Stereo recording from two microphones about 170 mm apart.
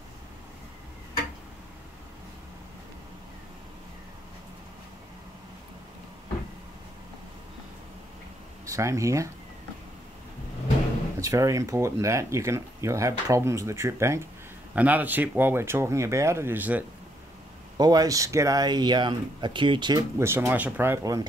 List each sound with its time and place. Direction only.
8.6 s speech: 15° right (ahead or behind)
11.1 s speech: 20° right (ahead or behind)
17.7 s speech: 20° right (ahead or behind)